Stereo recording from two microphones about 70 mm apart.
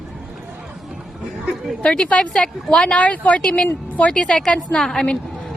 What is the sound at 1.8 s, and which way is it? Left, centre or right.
Speech, centre.